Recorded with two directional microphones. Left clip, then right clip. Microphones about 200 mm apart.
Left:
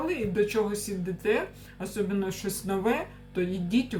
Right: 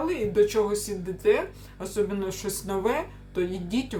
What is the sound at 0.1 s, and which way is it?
Speech, 15° right (ahead or behind).